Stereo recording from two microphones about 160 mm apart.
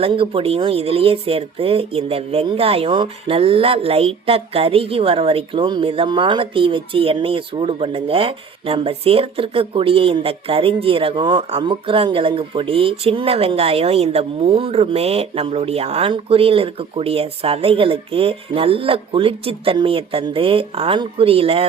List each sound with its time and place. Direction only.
0.0 s speech: 35° right (ahead or behind)